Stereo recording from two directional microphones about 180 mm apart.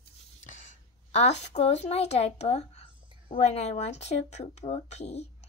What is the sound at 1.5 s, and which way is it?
Speech, 40° left (ahead or behind).